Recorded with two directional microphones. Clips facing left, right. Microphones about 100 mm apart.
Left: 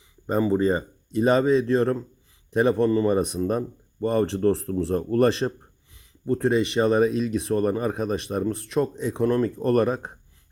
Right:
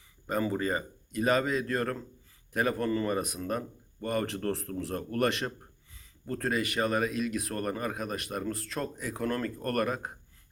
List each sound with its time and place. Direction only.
0.3 s speech: 25° left (ahead or behind)
5.9 s speech: 20° left (ahead or behind)